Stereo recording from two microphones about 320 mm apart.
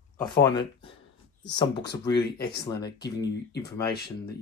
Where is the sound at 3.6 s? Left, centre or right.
Centre.